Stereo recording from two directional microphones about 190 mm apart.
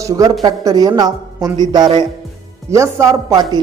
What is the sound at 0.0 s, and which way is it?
A woman's voice, 20° right (ahead or behind).